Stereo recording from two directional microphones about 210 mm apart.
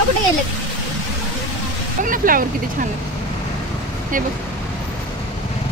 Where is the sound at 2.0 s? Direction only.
40° right (ahead or behind).